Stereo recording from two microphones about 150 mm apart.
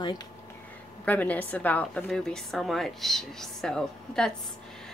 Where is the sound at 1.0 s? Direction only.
10° left (ahead or behind).